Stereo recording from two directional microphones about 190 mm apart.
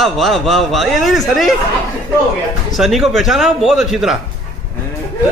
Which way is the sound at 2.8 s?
Centre (ahead or behind).